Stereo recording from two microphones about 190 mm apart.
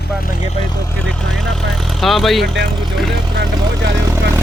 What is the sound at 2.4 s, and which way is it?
Speech, 65° right (ahead or behind).